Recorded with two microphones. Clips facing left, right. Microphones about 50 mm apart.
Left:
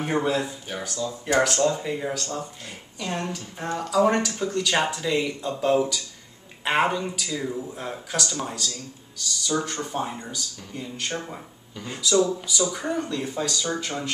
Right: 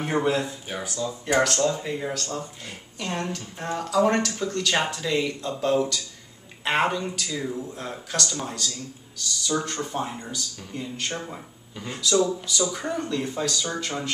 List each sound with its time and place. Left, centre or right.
0.0 s speech: centre
1.4 s speech: centre
11.7 s speech: centre
12.3 s speech: centre